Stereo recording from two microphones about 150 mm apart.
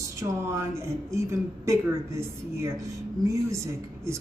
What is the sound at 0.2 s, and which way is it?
Speech, 20° right (ahead or behind).